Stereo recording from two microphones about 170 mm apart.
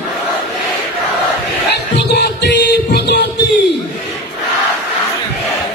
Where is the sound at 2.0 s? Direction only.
80° left.